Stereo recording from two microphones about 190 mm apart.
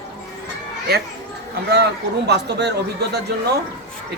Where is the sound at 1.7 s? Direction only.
60° right (ahead or behind).